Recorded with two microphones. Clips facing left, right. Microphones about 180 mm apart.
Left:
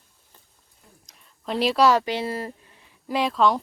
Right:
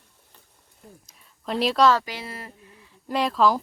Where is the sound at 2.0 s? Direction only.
25° left (ahead or behind).